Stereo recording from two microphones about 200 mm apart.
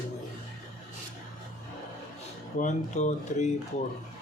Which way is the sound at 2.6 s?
35° left (ahead or behind).